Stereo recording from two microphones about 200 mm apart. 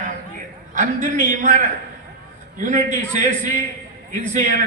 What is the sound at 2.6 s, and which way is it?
A man's voice, 40° right (ahead or behind).